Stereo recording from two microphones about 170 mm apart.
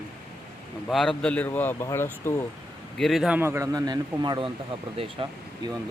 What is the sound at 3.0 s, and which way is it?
Speech, centre (ahead or behind).